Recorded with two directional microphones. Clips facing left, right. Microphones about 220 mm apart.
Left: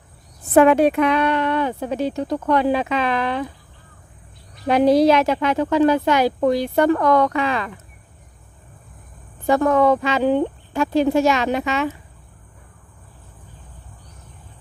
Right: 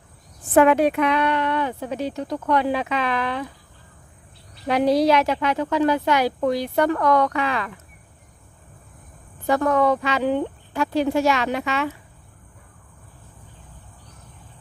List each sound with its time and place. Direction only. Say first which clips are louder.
0.6 s speech: left 3 dB; 30° left (ahead or behind)
4.7 s speech: left 4 dB; 40° left (ahead or behind)
5.0 s speech: left 3 dB; 25° left (ahead or behind)
9.5 s speech: left 3 dB; 25° left (ahead or behind)